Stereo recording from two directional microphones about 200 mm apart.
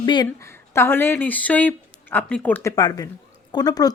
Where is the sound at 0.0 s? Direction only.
20° left (ahead or behind).